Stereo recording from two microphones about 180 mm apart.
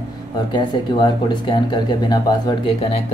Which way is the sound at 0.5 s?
25° left (ahead or behind).